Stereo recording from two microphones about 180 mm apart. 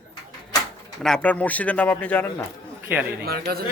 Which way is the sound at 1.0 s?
5° left (ahead or behind).